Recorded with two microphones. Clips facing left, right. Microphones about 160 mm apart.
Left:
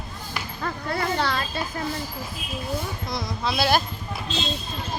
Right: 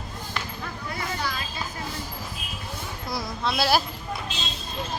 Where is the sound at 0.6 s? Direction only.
60° left (ahead or behind).